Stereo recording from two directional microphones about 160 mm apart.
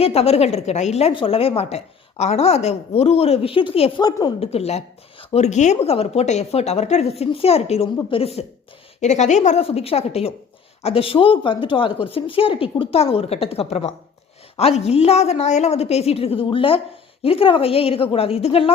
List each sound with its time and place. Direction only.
0.0 s a woman's voice: 40° left (ahead or behind)
4.5 s speech: 40° left (ahead or behind)